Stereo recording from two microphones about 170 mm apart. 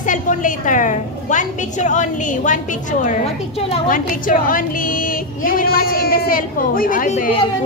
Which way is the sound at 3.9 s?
50° left (ahead or behind).